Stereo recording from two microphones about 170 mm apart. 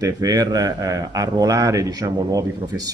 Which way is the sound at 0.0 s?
20° right (ahead or behind).